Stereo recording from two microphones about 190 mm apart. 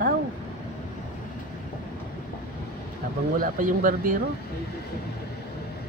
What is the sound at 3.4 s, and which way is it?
Speech, 45° right (ahead or behind).